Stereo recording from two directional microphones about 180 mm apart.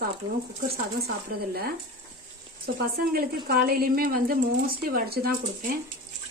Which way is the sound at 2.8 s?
55° right (ahead or behind).